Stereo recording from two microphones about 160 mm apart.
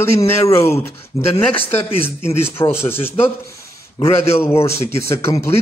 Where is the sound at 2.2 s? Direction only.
15° left (ahead or behind).